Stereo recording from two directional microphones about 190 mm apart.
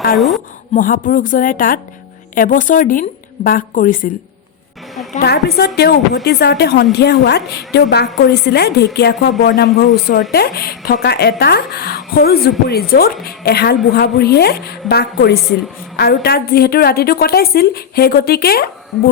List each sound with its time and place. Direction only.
0.2 s a woman's voice: centre (ahead or behind)
0.7 s a woman's voice: 45° left (ahead or behind)
5.2 s speech: 55° left (ahead or behind)